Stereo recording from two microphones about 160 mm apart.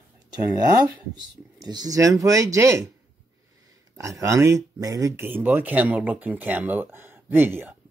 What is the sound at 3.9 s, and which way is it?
Speech, 20° right (ahead or behind).